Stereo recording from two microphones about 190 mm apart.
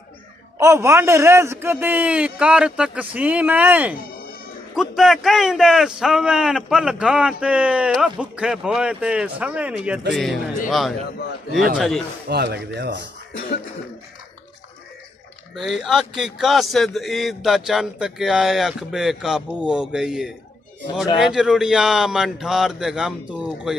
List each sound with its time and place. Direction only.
0.6 s a man's voice: 15° right (ahead or behind); by 10.4 s centre (ahead or behind)
11.5 s a man's voice: centre (ahead or behind)
12.3 s speech: 60° right (ahead or behind)
15.5 s a man's voice: centre (ahead or behind)